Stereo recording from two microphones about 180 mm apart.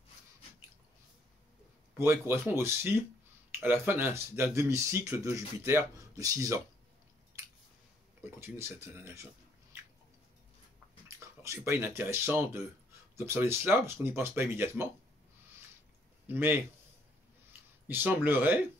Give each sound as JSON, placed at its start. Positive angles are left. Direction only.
{"t": 2.0, "sound": "speech", "side_deg": -15}
{"t": 8.2, "sound": "speech", "side_deg": -15}
{"t": 11.4, "sound": "speech", "side_deg": -15}
{"t": 16.3, "sound": "speech", "side_deg": -10}